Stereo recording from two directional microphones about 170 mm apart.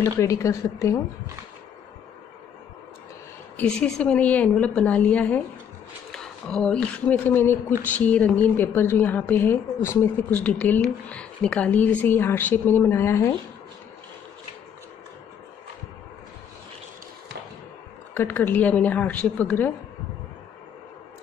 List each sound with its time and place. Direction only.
0.0 s speech: 20° left (ahead or behind)
3.5 s speech: 5° left (ahead or behind)
18.1 s speech: 15° left (ahead or behind)